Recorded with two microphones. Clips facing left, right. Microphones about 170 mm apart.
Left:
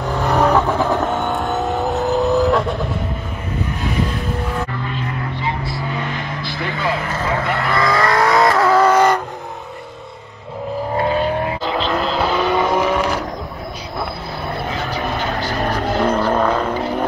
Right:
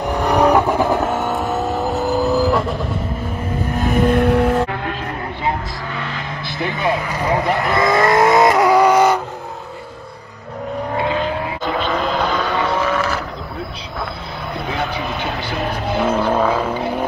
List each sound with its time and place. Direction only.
0.2 s vehicle: 15° right (ahead or behind)
3.8 s vehicle: 55° right (ahead or behind)
4.6 s music: 65° right (ahead or behind)
6.4 s vehicle: 20° right (ahead or behind)
11.7 s vehicle: centre (ahead or behind)
15.8 s vehicle: 5° right (ahead or behind)